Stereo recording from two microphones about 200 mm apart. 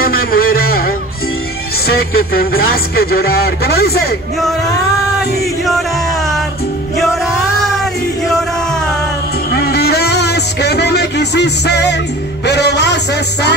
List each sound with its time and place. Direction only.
0.0 s music: 45° left (ahead or behind)
1.9 s speech: 50° left (ahead or behind)
5.7 s music: centre (ahead or behind)
7.8 s music: centre (ahead or behind)
9.5 s a sound: 50° left (ahead or behind)